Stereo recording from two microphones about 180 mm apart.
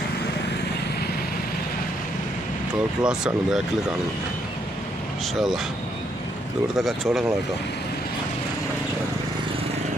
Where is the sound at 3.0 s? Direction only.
Centre (ahead or behind).